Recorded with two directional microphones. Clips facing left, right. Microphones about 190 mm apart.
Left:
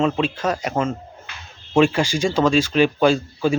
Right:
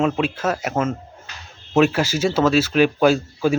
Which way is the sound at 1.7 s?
5° right (ahead or behind).